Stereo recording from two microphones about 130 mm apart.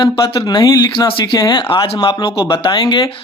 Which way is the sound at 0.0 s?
30° left (ahead or behind).